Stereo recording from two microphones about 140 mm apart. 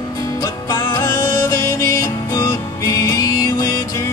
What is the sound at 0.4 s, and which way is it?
Music, 25° left (ahead or behind).